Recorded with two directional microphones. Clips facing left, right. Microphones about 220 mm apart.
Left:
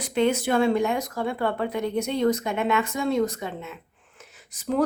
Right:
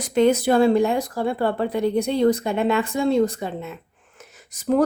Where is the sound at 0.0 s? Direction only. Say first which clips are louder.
Right 5 dB; 40° right (ahead or behind).